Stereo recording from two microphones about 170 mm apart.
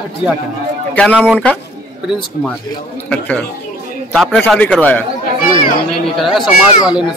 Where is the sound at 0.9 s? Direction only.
10° left (ahead or behind).